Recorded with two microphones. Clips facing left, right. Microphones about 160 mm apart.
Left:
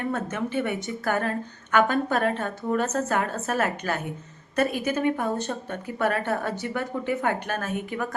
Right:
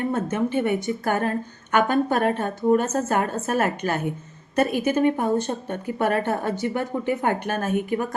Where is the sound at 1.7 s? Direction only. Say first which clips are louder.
Right 2 dB; 45° right (ahead or behind).